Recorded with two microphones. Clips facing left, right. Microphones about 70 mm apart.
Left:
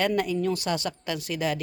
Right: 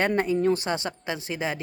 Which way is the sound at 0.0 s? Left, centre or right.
Right.